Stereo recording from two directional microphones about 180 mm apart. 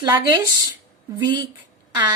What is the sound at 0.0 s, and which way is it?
Speech, 20° right (ahead or behind).